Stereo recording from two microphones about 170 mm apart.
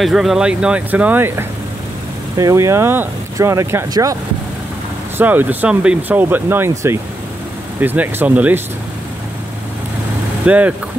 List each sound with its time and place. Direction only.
0.0 s speech: centre (ahead or behind)
2.3 s speech: 20° right (ahead or behind)
10.4 s speech: 10° right (ahead or behind)